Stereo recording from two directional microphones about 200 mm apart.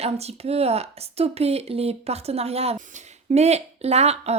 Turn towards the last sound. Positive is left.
turn(degrees=-30)  # may be behind; listen again after turning